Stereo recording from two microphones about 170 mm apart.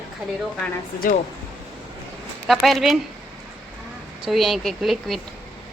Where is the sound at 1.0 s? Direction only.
55° left (ahead or behind).